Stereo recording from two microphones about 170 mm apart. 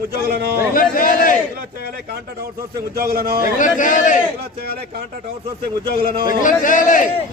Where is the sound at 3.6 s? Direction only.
50° left (ahead or behind).